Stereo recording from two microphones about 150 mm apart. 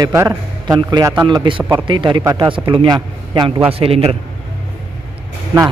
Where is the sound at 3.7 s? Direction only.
40° right (ahead or behind).